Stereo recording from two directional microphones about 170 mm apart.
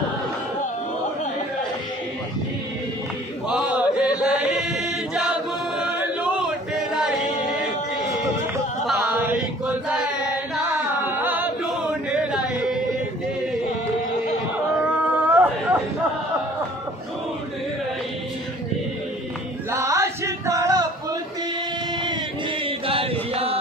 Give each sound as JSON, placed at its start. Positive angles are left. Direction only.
{"t": 3.4, "sound": "chant", "side_deg": -5}
{"t": 8.8, "sound": "singing", "side_deg": -5}
{"t": 10.5, "sound": "music", "side_deg": -10}
{"t": 12.2, "sound": "yodeling", "side_deg": -5}
{"t": 15.0, "sound": "a sound", "side_deg": -10}
{"t": 19.7, "sound": "a sound", "side_deg": -15}
{"t": 22.7, "sound": "chant", "side_deg": -35}